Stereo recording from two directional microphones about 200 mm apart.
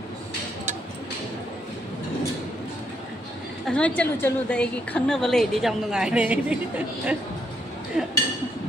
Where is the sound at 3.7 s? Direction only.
5° left (ahead or behind).